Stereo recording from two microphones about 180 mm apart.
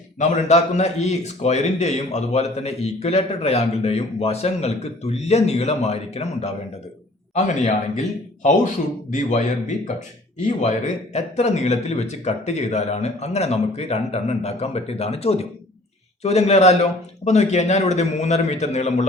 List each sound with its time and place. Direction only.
0.2 s a man's voice: 40° left (ahead or behind)
9.1 s a man's voice: 45° left (ahead or behind)